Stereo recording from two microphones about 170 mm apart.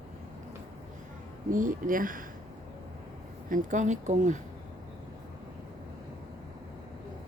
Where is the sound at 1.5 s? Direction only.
50° right (ahead or behind).